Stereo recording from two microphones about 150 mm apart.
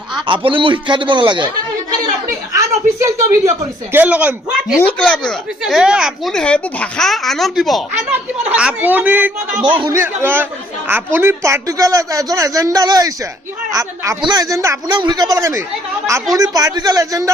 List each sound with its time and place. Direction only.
0.3 s a man's voice: 35° right (ahead or behind)
1.9 s speech: 20° right (ahead or behind)
4.8 s speech: 10° left (ahead or behind); by 9.3 s 10° right (ahead or behind)
9.6 s a man's voice: 30° right (ahead or behind)
9.9 s a man's voice: 15° right (ahead or behind)